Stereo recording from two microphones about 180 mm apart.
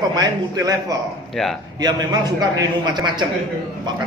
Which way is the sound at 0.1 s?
20° right (ahead or behind).